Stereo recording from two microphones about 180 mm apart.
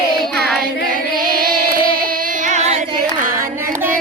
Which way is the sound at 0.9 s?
50° right (ahead or behind).